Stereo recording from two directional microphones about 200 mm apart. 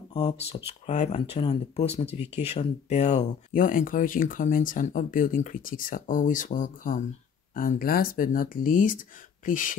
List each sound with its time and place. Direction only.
0.1 s speech: 20° left (ahead or behind)
0.7 s speech: 35° left (ahead or behind)